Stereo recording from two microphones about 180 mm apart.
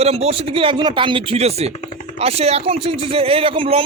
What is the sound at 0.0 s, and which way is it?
A man's voice, 35° right (ahead or behind).